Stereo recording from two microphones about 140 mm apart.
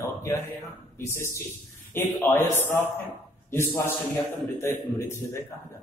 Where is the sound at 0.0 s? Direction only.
20° left (ahead or behind).